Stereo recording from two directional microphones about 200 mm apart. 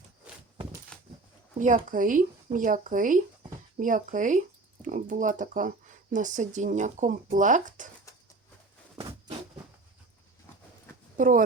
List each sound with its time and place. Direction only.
0.3 s a sound: 5° right (ahead or behind)
1.5 s speech: 40° right (ahead or behind)
11.2 s a woman's voice: 40° right (ahead or behind)